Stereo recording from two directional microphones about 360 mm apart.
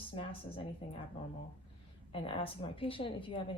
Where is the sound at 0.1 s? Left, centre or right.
Centre.